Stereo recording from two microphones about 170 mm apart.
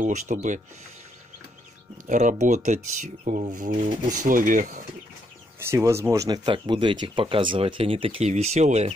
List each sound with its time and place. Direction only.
0.0 s speech: 45° right (ahead or behind)
2.0 s speech: 45° right (ahead or behind)
5.6 s speech: 15° right (ahead or behind); by 8.9 s 40° right (ahead or behind)